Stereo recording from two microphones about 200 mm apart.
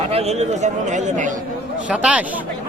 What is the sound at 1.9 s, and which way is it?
Speech, 5° right (ahead or behind).